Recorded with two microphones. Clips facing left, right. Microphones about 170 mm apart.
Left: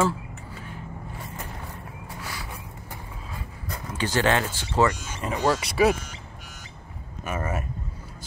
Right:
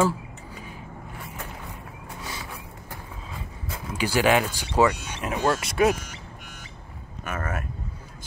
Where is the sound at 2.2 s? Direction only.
20° right (ahead or behind).